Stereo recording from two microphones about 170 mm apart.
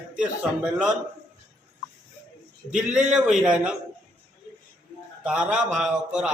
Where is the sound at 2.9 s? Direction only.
5° right (ahead or behind).